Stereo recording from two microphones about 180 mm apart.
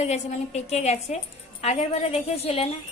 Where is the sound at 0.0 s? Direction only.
35° left (ahead or behind).